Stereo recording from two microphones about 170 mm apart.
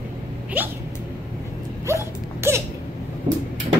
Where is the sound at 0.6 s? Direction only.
10° right (ahead or behind).